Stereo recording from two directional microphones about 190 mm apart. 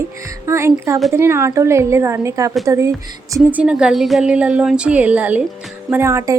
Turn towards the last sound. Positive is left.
turn(degrees=-15)  # may be behind; listen again after turning